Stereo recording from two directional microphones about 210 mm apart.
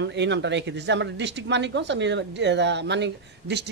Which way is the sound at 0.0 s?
55° right (ahead or behind).